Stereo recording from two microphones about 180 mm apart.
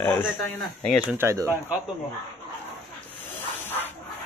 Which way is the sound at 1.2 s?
15° right (ahead or behind).